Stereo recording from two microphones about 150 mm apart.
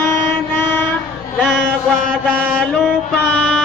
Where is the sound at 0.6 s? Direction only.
15° left (ahead or behind).